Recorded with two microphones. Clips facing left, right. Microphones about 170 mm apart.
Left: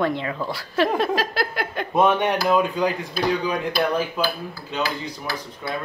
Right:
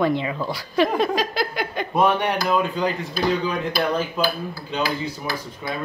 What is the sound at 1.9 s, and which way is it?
Speech, 20° left (ahead or behind).